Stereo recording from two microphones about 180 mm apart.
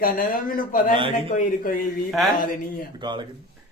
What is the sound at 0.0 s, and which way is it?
Speech, 50° left (ahead or behind).